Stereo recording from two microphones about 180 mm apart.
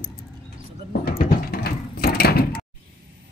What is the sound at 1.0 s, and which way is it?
Mechanisms, 55° left (ahead or behind).